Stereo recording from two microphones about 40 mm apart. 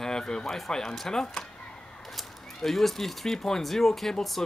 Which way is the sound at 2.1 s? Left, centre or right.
Centre.